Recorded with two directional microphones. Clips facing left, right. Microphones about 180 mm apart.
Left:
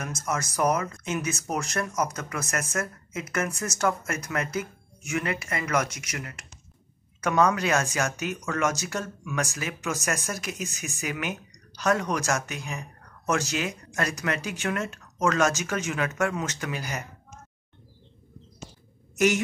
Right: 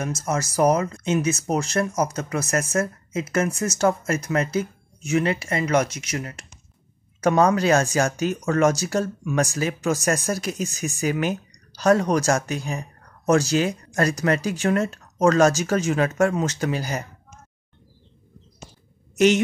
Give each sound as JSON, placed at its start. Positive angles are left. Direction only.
{"t": 0.0, "sound": "speech", "side_deg": -30}
{"t": 19.1, "sound": "a woman's voice", "side_deg": -25}